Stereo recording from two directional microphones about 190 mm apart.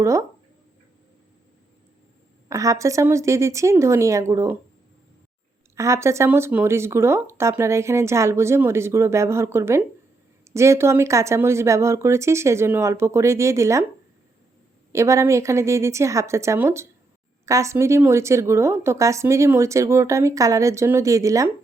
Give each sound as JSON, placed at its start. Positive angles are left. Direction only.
{"t": 0.0, "sound": "speech", "side_deg": -15}
{"t": 2.5, "sound": "speech", "side_deg": -15}
{"t": 5.7, "sound": "speech", "side_deg": -15}
{"t": 14.9, "sound": "speech", "side_deg": -15}